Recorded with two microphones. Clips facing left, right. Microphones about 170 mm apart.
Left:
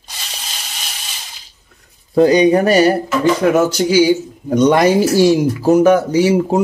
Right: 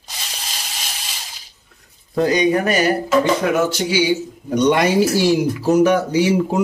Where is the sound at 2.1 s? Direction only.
30° left (ahead or behind).